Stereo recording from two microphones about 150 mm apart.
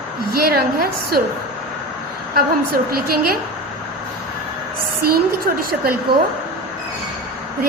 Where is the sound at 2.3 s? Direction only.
90° right.